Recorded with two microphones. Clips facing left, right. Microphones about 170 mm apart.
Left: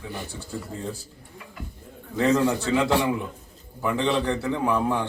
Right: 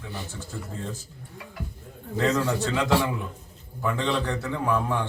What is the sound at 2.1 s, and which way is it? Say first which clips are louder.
A man's voice: left 3 dB; 15° left (ahead or behind).